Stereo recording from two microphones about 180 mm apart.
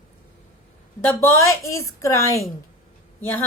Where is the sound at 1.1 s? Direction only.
15° left (ahead or behind).